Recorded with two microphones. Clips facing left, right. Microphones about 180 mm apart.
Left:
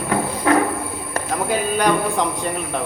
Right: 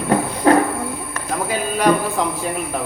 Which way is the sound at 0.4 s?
35° right (ahead or behind).